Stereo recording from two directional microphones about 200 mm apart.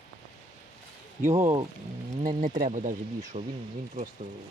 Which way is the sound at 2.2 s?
45° right (ahead or behind).